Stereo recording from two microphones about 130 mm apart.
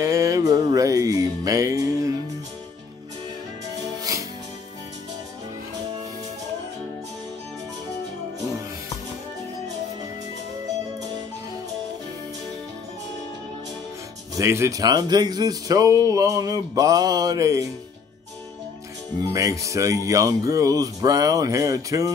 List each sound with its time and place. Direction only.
0.0 s music: 25° right (ahead or behind)
4.1 s music: 25° right (ahead or behind)
14.3 s speech: 20° right (ahead or behind)
19.2 s speech: 25° right (ahead or behind)